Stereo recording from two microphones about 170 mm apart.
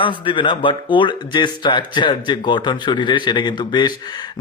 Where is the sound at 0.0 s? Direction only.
30° left (ahead or behind).